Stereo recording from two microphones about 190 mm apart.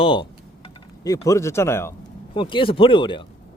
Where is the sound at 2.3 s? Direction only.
25° left (ahead or behind).